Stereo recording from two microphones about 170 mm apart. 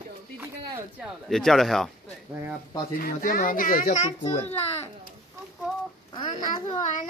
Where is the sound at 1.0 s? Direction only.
Centre (ahead or behind).